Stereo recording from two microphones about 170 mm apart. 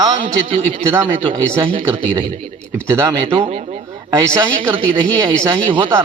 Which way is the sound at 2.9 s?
15° right (ahead or behind).